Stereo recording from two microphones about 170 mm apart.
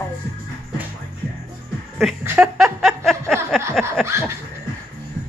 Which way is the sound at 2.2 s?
15° right (ahead or behind).